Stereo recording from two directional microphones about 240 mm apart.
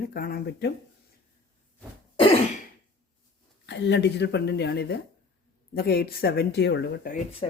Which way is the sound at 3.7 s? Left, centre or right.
Left.